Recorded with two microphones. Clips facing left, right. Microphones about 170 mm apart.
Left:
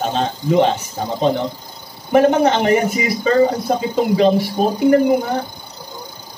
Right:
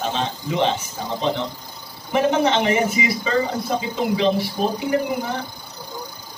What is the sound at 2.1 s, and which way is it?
A man's voice, 45° left (ahead or behind).